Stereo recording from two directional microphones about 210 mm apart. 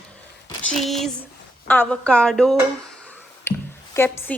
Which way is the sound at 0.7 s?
Centre (ahead or behind).